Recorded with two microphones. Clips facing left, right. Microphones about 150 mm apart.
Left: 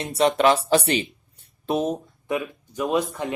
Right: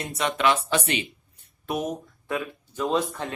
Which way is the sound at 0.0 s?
30° left (ahead or behind).